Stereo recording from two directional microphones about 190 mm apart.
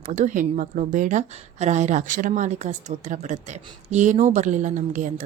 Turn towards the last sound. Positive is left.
turn(degrees=-40)  # may be behind; listen again after turning